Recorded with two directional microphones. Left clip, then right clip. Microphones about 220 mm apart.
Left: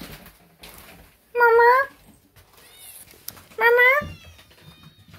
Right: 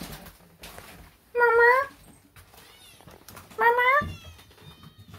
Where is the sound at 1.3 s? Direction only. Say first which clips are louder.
Left 4 dB; centre (ahead or behind).